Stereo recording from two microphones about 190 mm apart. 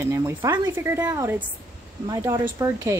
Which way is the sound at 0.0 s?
15° right (ahead or behind).